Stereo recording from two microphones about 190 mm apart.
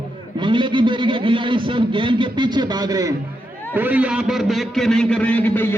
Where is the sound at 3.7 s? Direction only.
10° right (ahead or behind).